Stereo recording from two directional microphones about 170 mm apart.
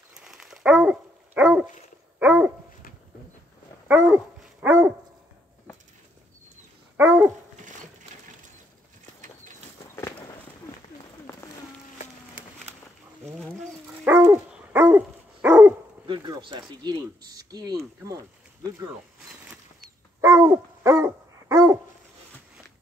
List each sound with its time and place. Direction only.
0.1 s dog: 5° right (ahead or behind)
3.8 s dog: 10° right (ahead or behind)
7.0 s dog: 10° right (ahead or behind)
9.8 s a sound: 15° left (ahead or behind)
11.3 s a sound: 10° left (ahead or behind)
13.5 s dog: 10° right (ahead or behind)
16.1 s speech: 25° right (ahead or behind)
20.2 s dog: 15° right (ahead or behind)